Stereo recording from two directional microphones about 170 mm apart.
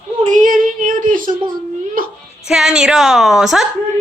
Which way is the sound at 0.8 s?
50° right (ahead or behind).